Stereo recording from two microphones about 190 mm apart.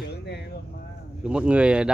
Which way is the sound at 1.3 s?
5° right (ahead or behind).